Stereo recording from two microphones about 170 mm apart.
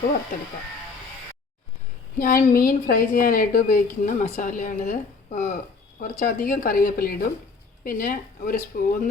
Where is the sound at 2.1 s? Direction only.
55° left (ahead or behind).